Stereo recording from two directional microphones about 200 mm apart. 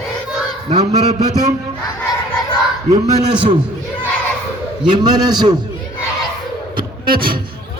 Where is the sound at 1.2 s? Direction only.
20° right (ahead or behind).